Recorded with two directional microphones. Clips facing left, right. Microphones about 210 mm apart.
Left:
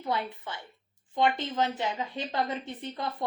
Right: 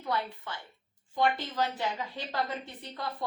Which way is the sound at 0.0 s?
20° left (ahead or behind).